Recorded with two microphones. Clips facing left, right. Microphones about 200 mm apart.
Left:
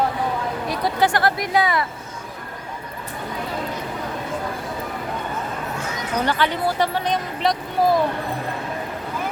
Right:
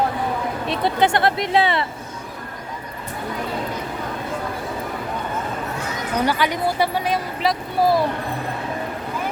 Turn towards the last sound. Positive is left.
turn(degrees=-5)  # may be behind; listen again after turning